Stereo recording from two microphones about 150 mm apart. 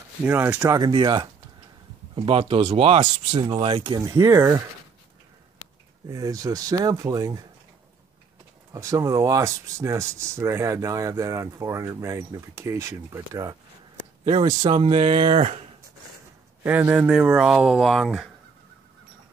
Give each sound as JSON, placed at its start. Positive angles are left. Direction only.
{"t": 0.2, "sound": "speech", "side_deg": -15}
{"t": 4.1, "sound": "speech", "side_deg": -20}
{"t": 6.0, "sound": "speech", "side_deg": -25}
{"t": 8.7, "sound": "speech", "side_deg": -20}
{"t": 14.7, "sound": "speech", "side_deg": -40}
{"t": 16.6, "sound": "speech", "side_deg": -15}